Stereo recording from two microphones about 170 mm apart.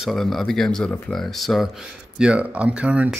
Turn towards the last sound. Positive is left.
turn(degrees=-5)  # may be behind; listen again after turning